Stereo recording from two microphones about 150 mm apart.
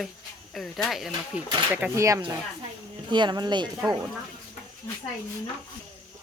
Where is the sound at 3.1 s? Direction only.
30° right (ahead or behind).